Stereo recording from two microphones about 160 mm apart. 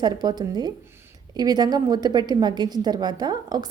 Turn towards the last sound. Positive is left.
turn(degrees=-25)  # may be behind; listen again after turning